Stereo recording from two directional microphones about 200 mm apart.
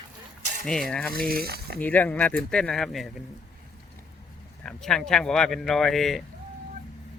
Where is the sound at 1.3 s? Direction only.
50° right (ahead or behind).